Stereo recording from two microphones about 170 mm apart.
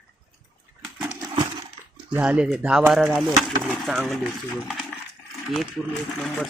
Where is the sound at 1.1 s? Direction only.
25° right (ahead or behind).